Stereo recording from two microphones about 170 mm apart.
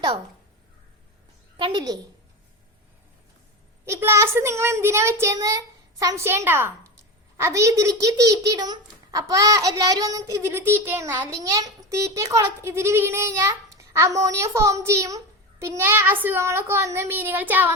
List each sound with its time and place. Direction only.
1.5 s a woman's voice: 30° right (ahead or behind)
3.8 s a child's voice: 15° right (ahead or behind)